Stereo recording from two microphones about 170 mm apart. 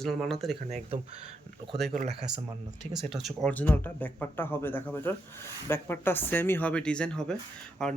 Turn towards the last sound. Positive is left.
turn(degrees=5)  # may be behind; listen again after turning